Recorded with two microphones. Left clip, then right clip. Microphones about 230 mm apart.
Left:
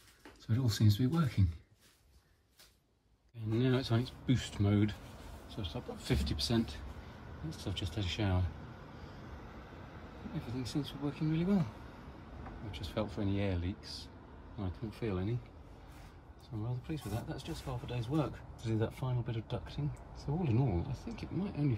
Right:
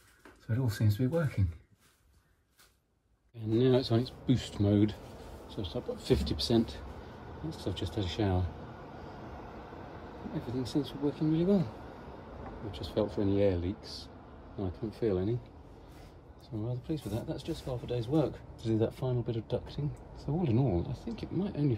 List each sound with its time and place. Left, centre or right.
0.5 s speech: centre
3.4 s speech: left
5.1 s a sound: centre
5.6 s speech: centre
6.1 s speech: centre
6.6 s a sound: centre
7.5 s speech: centre
8.5 s vehicle: centre
10.8 s speech: centre
11.7 s a sound: centre
12.9 s speech: left
13.2 s speech: centre
16.8 s speech: left